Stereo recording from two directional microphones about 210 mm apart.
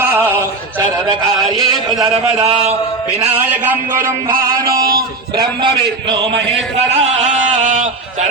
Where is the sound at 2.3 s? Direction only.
25° right (ahead or behind).